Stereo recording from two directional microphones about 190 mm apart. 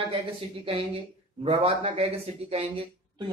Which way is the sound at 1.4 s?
30° right (ahead or behind).